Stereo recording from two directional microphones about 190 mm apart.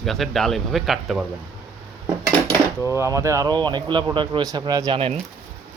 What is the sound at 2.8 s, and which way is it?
A man's voice, 15° right (ahead or behind).